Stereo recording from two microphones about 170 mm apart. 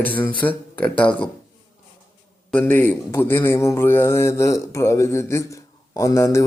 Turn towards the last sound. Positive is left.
turn(degrees=15)  # may be behind; listen again after turning